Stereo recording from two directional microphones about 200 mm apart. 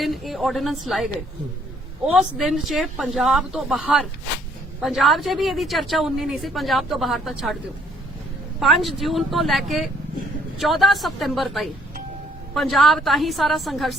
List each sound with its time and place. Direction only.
0.0 s a woman's voice: centre (ahead or behind)
8.5 s a woman's voice: centre (ahead or behind)